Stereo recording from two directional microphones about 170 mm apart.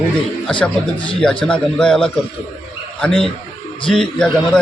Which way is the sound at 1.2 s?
5° left (ahead or behind).